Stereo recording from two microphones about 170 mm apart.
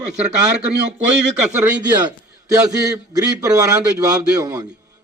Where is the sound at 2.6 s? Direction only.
20° right (ahead or behind).